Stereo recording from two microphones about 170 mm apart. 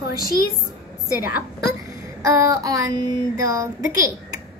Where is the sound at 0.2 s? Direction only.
60° left (ahead or behind).